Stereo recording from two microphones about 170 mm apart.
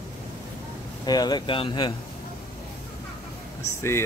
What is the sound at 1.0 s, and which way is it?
Speech, 25° left (ahead or behind).